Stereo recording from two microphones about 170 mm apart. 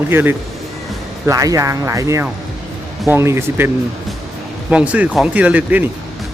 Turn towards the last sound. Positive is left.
turn(degrees=-10)  # may be behind; listen again after turning